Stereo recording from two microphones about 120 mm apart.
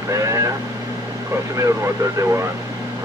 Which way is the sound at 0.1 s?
25° right (ahead or behind).